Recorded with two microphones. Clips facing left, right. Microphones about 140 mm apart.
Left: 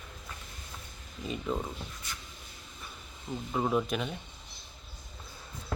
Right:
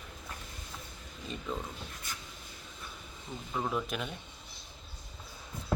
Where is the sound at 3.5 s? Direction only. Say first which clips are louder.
Left 5 dB; 15° left (ahead or behind).